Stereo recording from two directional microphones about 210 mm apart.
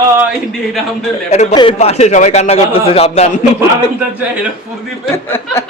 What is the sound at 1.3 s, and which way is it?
A man's voice, 30° left (ahead or behind).